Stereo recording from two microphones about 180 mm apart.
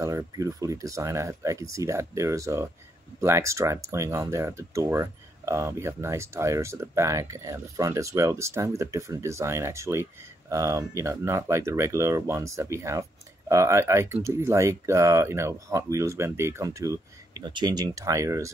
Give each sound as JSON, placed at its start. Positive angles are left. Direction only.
{"t": 0.0, "sound": "speech", "side_deg": -15}